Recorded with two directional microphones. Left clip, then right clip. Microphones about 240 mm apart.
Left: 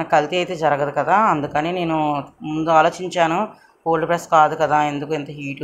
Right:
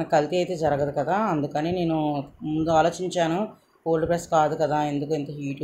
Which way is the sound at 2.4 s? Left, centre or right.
Centre.